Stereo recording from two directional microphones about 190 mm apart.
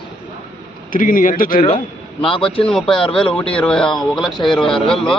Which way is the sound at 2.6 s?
5° left (ahead or behind).